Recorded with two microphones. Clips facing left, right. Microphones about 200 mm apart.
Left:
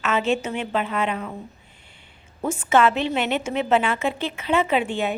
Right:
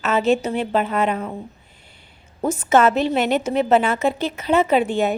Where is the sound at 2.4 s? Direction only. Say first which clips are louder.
Right 3 dB; 40° right (ahead or behind).